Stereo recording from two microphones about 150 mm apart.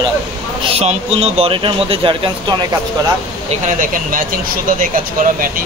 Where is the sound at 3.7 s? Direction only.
65° right (ahead or behind).